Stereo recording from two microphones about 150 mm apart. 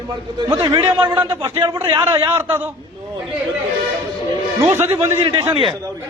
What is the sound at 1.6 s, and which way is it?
Speech, 30° right (ahead or behind).